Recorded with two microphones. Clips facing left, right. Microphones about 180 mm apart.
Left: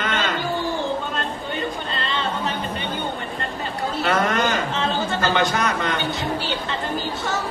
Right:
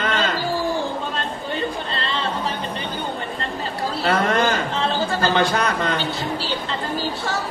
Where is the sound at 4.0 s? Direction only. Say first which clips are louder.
Right 2 dB; 30° right (ahead or behind).